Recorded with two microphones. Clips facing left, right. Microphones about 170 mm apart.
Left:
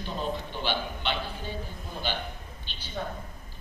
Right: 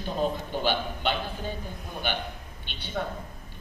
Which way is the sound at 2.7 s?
60° right (ahead or behind).